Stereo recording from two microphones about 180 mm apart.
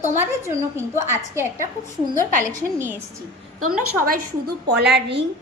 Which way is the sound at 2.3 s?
45° right (ahead or behind).